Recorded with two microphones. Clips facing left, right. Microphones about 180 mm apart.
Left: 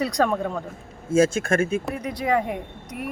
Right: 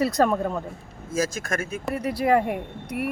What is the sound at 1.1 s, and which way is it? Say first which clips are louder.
Speech: left 7 dB; 30° left (ahead or behind).